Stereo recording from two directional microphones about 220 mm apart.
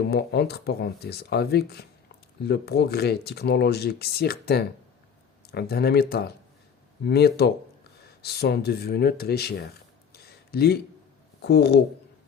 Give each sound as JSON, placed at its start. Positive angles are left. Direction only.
{"t": 0.1, "sound": "speech", "side_deg": 50}